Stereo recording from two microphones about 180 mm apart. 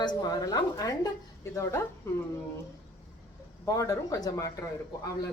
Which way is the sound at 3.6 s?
20° left (ahead or behind).